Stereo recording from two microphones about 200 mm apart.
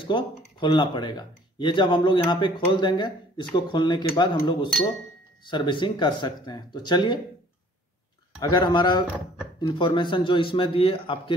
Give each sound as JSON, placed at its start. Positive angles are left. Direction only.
{"t": 0.1, "sound": "speech", "side_deg": 25}
{"t": 8.4, "sound": "speech", "side_deg": 20}